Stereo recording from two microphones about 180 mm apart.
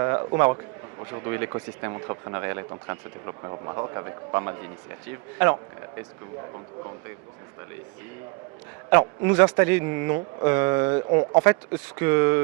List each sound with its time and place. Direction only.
0.0 s a sound: 20° right (ahead or behind)
0.3 s a man's voice: 15° right (ahead or behind)
8.9 s a man's voice: 10° right (ahead or behind)
11.2 s speech: 30° right (ahead or behind)
11.9 s a man's voice: 15° right (ahead or behind)